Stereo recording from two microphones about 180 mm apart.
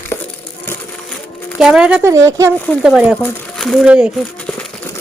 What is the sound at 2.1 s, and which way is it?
Speech, 15° right (ahead or behind).